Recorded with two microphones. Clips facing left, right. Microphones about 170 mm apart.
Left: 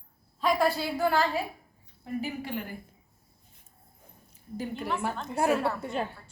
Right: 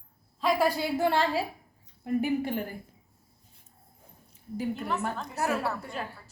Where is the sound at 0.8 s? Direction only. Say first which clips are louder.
Right 1 dB; 25° right (ahead or behind).